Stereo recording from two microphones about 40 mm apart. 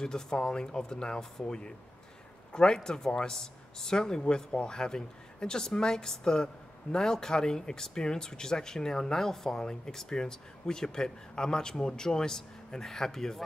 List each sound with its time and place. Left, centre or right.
0.0 s speech: centre
4.2 s speech: left